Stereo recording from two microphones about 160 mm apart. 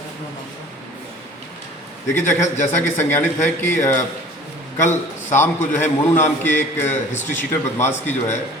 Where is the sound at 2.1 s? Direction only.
15° left (ahead or behind).